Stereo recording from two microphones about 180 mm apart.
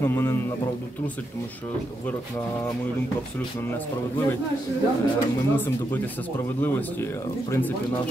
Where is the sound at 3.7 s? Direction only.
10° left (ahead or behind).